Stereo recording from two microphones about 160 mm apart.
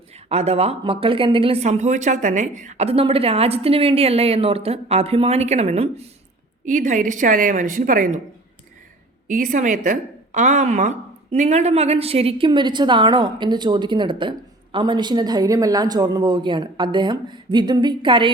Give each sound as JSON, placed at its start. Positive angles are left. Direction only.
{"t": 0.3, "sound": "speech", "side_deg": -40}
{"t": 6.7, "sound": "a woman's voice", "side_deg": -50}
{"t": 9.2, "sound": "a woman's voice", "side_deg": -55}